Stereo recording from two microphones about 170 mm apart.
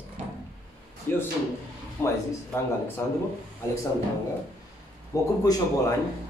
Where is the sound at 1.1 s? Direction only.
10° left (ahead or behind).